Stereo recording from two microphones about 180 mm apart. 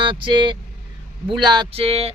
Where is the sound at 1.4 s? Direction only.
25° right (ahead or behind).